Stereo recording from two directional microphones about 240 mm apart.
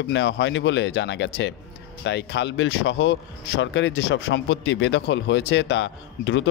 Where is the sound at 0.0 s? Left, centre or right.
Left.